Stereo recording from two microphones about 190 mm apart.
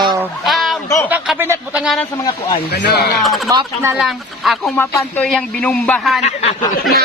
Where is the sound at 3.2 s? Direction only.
Centre (ahead or behind).